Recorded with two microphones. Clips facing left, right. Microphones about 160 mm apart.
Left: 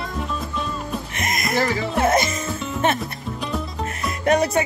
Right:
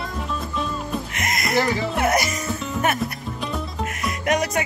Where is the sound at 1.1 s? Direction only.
25° left (ahead or behind).